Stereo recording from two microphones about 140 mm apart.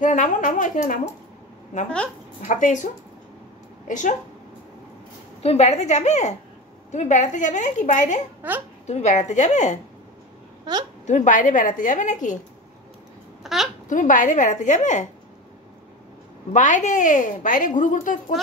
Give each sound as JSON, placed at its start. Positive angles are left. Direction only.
{"t": 0.0, "sound": "speech", "side_deg": 65}
{"t": 2.4, "sound": "a woman's voice", "side_deg": 60}
{"t": 5.4, "sound": "a woman's voice", "side_deg": 50}
{"t": 8.4, "sound": "speech", "side_deg": -15}
{"t": 8.8, "sound": "a woman's voice", "side_deg": 55}
{"t": 10.6, "sound": "a woman's voice", "side_deg": -30}
{"t": 11.1, "sound": "a woman's voice", "side_deg": 60}
{"t": 13.4, "sound": "a sound", "side_deg": 0}
{"t": 13.8, "sound": "a woman's voice", "side_deg": 70}
{"t": 16.5, "sound": "a woman's voice", "side_deg": 60}